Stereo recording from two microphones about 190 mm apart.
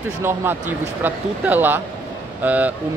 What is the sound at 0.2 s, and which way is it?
Speech, 15° right (ahead or behind).